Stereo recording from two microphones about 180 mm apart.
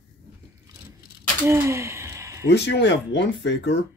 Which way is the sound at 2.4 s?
70° left (ahead or behind).